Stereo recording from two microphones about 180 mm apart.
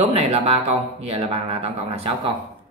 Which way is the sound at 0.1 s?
35° right (ahead or behind).